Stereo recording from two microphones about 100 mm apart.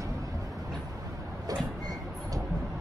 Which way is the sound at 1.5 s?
40° right (ahead or behind).